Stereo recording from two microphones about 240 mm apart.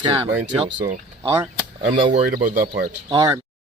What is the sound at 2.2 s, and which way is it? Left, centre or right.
Speech, right.